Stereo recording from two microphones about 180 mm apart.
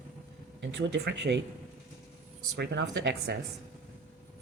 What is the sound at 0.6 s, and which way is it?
Speech, 85° right.